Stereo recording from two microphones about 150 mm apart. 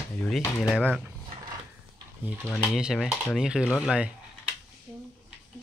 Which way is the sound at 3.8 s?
5° right (ahead or behind).